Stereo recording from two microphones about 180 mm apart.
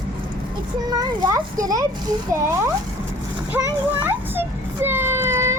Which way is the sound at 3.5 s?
10° right (ahead or behind).